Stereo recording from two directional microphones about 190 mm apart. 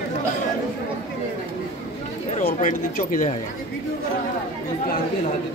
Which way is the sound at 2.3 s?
40° left (ahead or behind).